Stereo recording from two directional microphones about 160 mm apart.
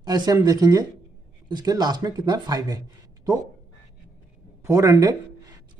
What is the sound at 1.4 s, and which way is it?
Speech, 25° right (ahead or behind).